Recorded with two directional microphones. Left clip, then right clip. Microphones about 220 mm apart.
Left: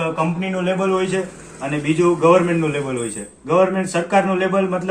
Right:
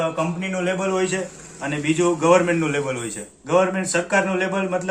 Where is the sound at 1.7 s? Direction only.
35° right (ahead or behind).